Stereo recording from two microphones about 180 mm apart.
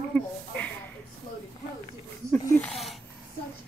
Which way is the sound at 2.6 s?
Centre (ahead or behind).